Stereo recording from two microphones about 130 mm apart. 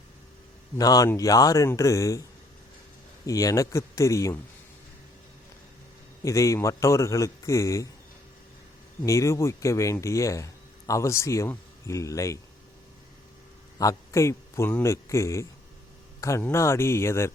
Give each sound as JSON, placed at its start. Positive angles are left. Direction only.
{"t": 0.8, "sound": "speech", "side_deg": 30}
{"t": 3.2, "sound": "speech", "side_deg": 25}
{"t": 6.2, "sound": "speech", "side_deg": 25}
{"t": 9.0, "sound": "speech", "side_deg": 25}
{"t": 13.7, "sound": "a man's voice", "side_deg": 25}